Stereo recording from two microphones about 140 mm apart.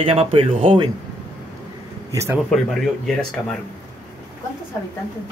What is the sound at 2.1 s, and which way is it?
Speech, 20° right (ahead or behind).